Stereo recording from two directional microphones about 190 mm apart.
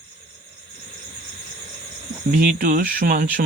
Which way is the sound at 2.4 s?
45° right (ahead or behind).